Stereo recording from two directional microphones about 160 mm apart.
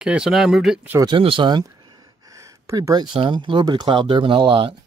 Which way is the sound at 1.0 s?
35° right (ahead or behind).